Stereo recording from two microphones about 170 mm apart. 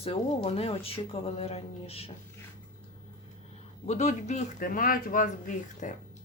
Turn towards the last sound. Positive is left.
turn(degrees=50)  # may be behind; listen again after turning